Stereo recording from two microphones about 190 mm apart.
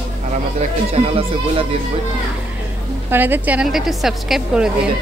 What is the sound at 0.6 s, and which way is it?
Speech, 35° right (ahead or behind).